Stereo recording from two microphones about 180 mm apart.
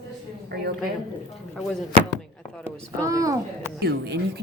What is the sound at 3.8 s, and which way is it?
Speech, 65° right (ahead or behind).